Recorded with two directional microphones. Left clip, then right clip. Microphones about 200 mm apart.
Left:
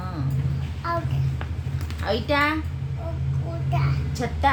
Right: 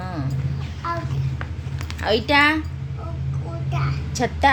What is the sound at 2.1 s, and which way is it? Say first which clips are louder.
Speech: right 5 dB; 35° right (ahead or behind).